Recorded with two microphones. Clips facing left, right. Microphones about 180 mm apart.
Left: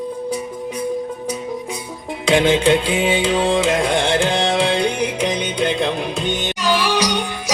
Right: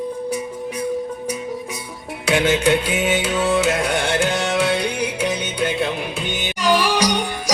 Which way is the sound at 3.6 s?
30° left (ahead or behind).